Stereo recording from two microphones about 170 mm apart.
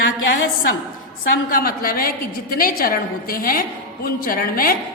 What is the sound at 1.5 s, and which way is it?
A woman's voice, 60° left (ahead or behind).